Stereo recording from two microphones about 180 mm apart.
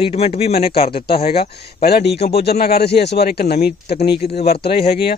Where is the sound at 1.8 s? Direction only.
60° left (ahead or behind).